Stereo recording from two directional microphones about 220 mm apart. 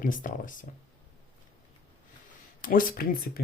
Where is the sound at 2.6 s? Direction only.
40° left (ahead or behind).